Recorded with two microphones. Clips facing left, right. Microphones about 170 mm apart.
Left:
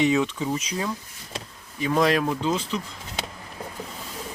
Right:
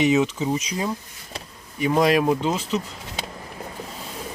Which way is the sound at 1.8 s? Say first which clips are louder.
Right 3 dB; 15° right (ahead or behind).